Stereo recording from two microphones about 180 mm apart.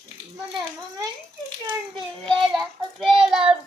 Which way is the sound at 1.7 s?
25° right (ahead or behind).